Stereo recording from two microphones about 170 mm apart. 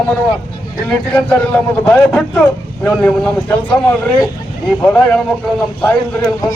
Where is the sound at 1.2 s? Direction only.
5° left (ahead or behind).